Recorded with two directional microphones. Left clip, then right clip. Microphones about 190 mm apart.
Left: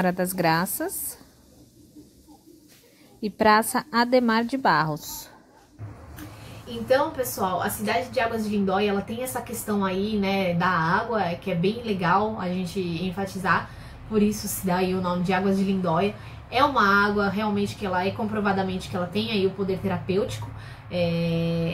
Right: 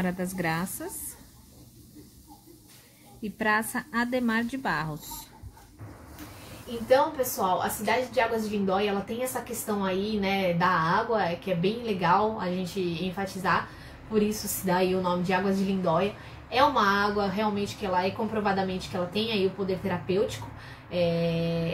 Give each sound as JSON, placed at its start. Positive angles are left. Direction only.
{"t": 0.0, "sound": "a woman's voice", "side_deg": 35}
{"t": 3.2, "sound": "a woman's voice", "side_deg": 35}
{"t": 6.9, "sound": "a woman's voice", "side_deg": 0}
{"t": 14.7, "sound": "a woman's voice", "side_deg": 0}